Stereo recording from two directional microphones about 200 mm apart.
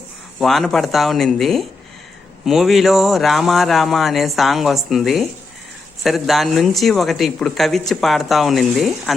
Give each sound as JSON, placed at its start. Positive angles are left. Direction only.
{"t": 0.3, "sound": "speech", "side_deg": 0}